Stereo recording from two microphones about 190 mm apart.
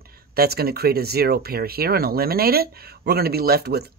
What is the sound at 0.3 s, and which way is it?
Speech, 55° right (ahead or behind).